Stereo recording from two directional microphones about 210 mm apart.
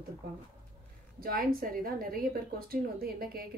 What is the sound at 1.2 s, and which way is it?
A woman's voice, 45° right (ahead or behind).